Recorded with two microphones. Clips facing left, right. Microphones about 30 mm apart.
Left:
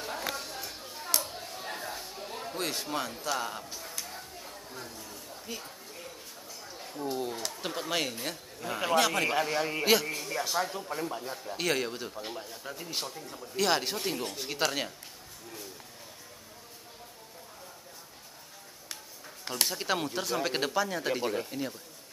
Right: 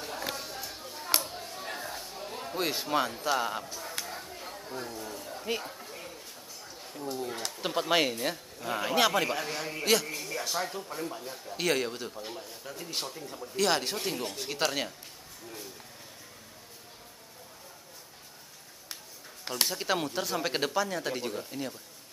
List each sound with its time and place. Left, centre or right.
0.0 s a sound: centre
4.4 s chatter: right
5.4 s speech: right
6.7 s a sound: centre
7.7 s a man's voice: centre
9.3 s a man's voice: centre
11.5 s a man's voice: centre
12.2 s a man's voice: centre
19.4 s a man's voice: centre